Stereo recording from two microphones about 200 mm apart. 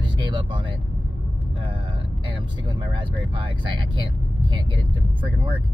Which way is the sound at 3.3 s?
25° right (ahead or behind).